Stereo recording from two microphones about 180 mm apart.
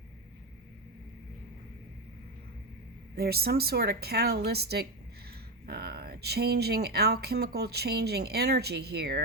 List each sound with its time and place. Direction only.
3.2 s speech: 60° right (ahead or behind)